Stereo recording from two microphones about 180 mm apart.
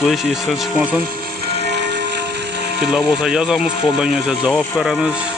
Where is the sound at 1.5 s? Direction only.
70° right (ahead or behind).